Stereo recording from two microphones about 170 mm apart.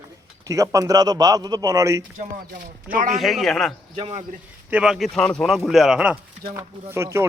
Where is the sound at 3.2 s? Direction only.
Centre (ahead or behind).